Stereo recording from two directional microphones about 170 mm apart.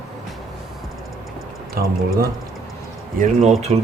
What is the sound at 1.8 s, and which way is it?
Speech, 65° right (ahead or behind).